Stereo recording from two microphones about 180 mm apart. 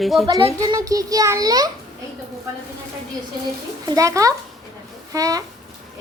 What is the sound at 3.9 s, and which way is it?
A child's voice, 20° right (ahead or behind).